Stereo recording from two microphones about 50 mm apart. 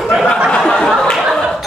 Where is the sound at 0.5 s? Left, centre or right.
Centre.